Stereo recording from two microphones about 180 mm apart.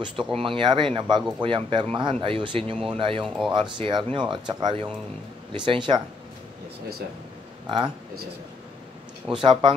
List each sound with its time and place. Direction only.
0.0 s speech: 25° right (ahead or behind)
7.6 s speech: 25° right (ahead or behind)
9.3 s speech: 25° right (ahead or behind)